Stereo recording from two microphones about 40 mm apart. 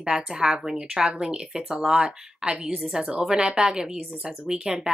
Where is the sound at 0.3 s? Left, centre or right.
Centre.